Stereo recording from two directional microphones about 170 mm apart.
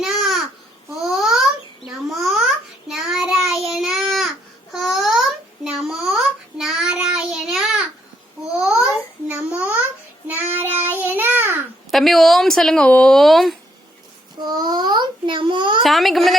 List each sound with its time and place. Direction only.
0.0 s babbling: centre (ahead or behind)
2.8 s child singing: centre (ahead or behind)
4.7 s babbling: centre (ahead or behind)
5.6 s child singing: 5° right (ahead or behind)
8.5 s babbling: 5° right (ahead or behind)
10.6 s child singing: 10° right (ahead or behind)
11.9 s speech: centre (ahead or behind)
14.4 s child singing: 25° right (ahead or behind)
15.8 s a sound: centre (ahead or behind)